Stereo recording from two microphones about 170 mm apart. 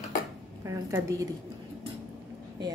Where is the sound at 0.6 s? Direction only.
15° right (ahead or behind).